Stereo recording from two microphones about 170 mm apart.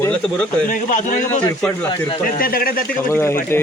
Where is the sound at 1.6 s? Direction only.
10° left (ahead or behind).